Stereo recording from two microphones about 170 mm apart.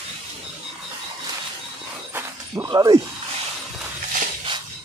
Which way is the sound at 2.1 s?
20° right (ahead or behind).